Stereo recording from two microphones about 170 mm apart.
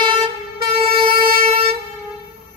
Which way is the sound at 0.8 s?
35° right (ahead or behind).